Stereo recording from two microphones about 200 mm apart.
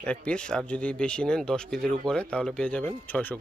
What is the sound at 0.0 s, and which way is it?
Speech, 5° left (ahead or behind).